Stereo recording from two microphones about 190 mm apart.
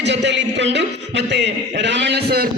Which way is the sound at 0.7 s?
65° right (ahead or behind).